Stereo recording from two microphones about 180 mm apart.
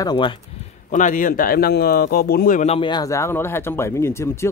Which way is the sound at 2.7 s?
25° left (ahead or behind).